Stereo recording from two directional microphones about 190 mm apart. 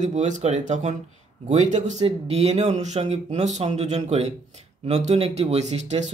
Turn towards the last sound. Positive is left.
turn(degrees=-35)  # may be behind; listen again after turning